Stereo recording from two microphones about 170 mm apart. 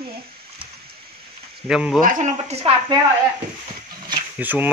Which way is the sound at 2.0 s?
45° right (ahead or behind).